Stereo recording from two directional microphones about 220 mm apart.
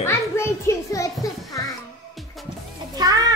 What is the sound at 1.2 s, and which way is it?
Music, 15° left (ahead or behind).